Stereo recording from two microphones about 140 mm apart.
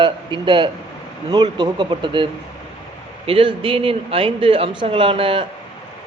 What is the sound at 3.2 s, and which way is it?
A man's voice, 40° right (ahead or behind).